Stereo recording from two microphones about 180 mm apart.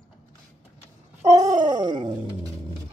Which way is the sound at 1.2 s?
20° right (ahead or behind).